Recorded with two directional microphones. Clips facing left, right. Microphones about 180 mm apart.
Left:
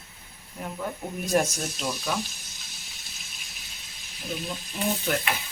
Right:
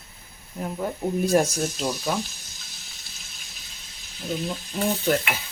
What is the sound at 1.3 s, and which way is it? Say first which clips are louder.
Speech: even; 40° right (ahead or behind).